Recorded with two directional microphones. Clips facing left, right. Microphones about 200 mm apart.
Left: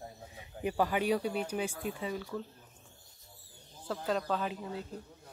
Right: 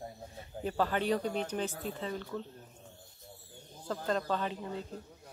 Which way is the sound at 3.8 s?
5° left (ahead or behind).